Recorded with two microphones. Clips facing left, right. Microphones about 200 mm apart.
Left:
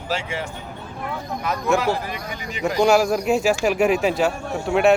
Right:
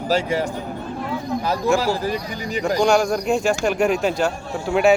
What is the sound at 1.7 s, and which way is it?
Speech, 35° right (ahead or behind).